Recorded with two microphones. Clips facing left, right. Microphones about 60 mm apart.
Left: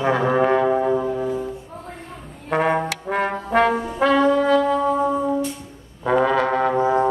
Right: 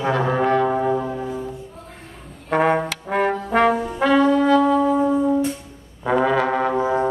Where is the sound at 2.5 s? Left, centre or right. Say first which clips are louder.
Right 1 dB; centre.